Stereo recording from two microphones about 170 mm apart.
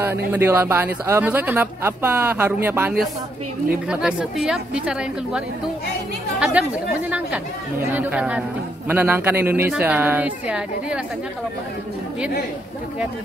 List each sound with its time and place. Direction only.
0.3 s a man's voice: 10° right (ahead or behind)
6.4 s a man's voice: 5° right (ahead or behind)